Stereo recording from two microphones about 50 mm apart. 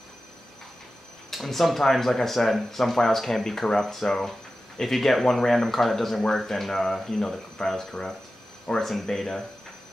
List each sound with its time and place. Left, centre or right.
1.3 s speech: centre